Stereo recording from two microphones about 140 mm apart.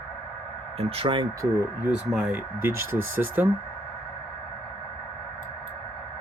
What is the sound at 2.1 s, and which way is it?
Speech, 10° right (ahead or behind).